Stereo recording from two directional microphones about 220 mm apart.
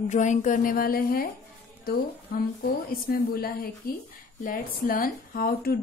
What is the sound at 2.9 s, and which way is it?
Speech, 45° left (ahead or behind).